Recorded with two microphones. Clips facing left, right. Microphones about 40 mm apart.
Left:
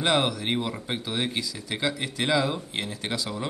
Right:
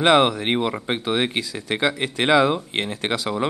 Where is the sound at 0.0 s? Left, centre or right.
Right.